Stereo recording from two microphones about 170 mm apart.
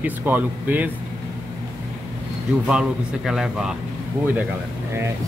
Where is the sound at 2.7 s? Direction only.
5° right (ahead or behind).